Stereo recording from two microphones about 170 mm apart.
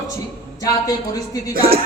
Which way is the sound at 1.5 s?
60° right (ahead or behind).